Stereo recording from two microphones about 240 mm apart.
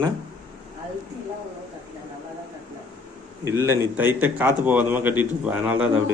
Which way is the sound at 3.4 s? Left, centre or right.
Centre.